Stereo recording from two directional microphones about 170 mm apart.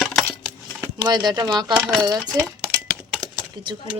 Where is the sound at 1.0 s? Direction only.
25° right (ahead or behind).